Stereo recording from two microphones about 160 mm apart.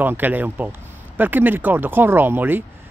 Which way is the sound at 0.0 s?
10° right (ahead or behind).